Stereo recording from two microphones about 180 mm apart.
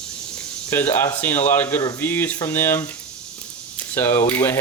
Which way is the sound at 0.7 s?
10° left (ahead or behind).